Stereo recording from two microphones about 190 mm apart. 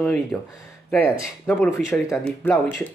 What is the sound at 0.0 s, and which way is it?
Speech, 5° left (ahead or behind).